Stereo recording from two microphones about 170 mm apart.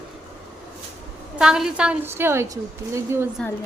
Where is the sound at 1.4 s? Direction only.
5° right (ahead or behind).